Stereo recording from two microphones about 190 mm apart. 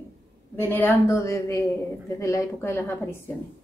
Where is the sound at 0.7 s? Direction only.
10° left (ahead or behind).